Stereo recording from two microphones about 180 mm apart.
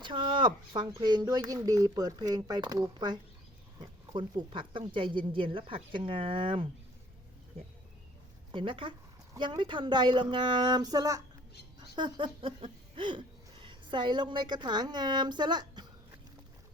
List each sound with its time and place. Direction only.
0.0 s speech: 25° right (ahead or behind)